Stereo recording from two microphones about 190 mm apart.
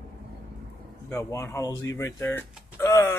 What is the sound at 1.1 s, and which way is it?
Speech, 15° left (ahead or behind).